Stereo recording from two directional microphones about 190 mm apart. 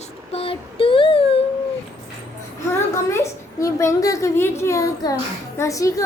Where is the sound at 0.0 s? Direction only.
30° left (ahead or behind).